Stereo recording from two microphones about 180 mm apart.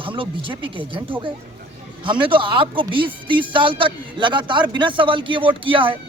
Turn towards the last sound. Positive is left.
turn(degrees=-30)  # may be behind; listen again after turning